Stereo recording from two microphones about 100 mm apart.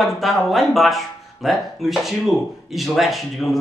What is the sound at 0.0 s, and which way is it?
Speech, centre (ahead or behind).